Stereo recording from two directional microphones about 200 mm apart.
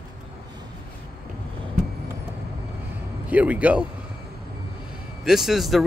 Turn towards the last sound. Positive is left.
turn(degrees=0)  # may be behind; listen again after turning